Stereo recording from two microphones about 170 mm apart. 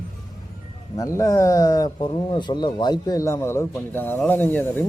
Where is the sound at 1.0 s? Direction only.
20° left (ahead or behind).